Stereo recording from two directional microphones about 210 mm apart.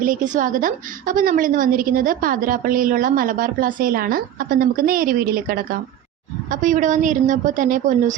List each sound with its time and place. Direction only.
0.0 s a woman's voice: 40° right (ahead or behind)